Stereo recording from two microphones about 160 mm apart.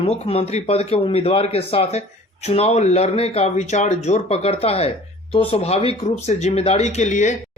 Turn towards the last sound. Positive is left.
turn(degrees=45)  # may be behind; listen again after turning